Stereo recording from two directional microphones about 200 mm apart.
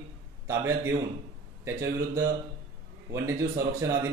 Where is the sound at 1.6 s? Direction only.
15° right (ahead or behind).